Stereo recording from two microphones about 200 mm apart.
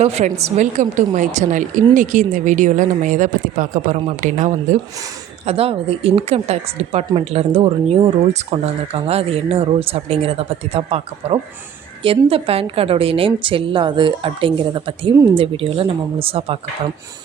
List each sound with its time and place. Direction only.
0.0 s a woman's voice: 30° right (ahead or behind)